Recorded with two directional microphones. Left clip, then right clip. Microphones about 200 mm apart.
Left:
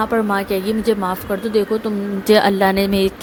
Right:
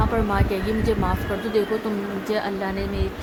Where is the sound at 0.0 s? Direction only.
25° left (ahead or behind).